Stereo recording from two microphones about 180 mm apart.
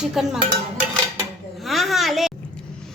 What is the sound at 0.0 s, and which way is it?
Dishes, centre (ahead or behind).